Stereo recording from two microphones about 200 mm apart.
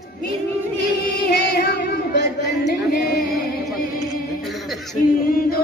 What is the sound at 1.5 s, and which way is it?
Singing, 55° left (ahead or behind).